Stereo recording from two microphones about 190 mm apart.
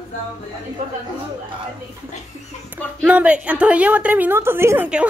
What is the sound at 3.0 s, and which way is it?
A woman's voice, 5° right (ahead or behind).